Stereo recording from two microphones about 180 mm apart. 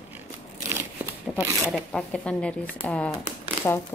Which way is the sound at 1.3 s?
5° left (ahead or behind).